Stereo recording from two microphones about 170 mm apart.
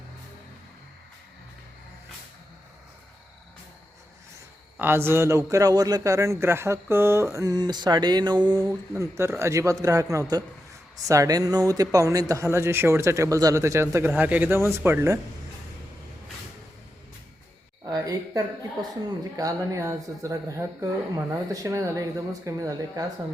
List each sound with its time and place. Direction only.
4.8 s a man's voice: 15° right (ahead or behind)
17.8 s a man's voice: 20° right (ahead or behind)